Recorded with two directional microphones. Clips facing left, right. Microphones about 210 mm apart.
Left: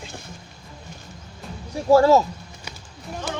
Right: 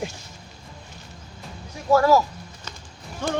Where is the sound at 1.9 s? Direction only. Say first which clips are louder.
Left 3 dB; 25° left (ahead or behind).